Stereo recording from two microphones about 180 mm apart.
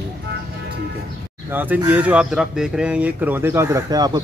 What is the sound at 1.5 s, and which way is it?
Speech, 10° right (ahead or behind).